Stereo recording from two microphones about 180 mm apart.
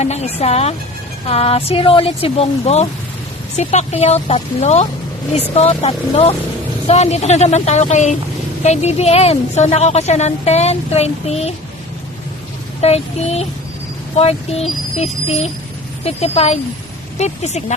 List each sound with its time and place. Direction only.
0.0 s a woman's voice: 40° left (ahead or behind)
12.8 s a woman's voice: 35° left (ahead or behind)